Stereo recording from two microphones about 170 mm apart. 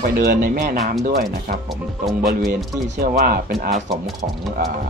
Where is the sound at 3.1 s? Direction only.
60° right (ahead or behind).